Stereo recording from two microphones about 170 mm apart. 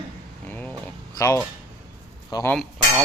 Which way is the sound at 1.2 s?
20° left (ahead or behind).